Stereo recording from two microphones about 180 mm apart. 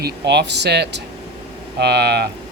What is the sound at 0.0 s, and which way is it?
Speech, 70° right (ahead or behind).